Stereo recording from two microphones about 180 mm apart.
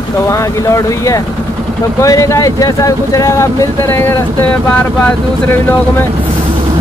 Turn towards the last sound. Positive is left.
turn(degrees=10)  # may be behind; listen again after turning